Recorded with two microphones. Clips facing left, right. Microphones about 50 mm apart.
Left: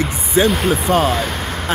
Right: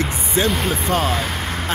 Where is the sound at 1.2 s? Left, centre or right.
Centre.